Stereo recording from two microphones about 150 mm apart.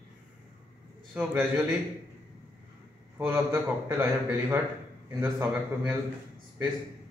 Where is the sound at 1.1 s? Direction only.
5° right (ahead or behind).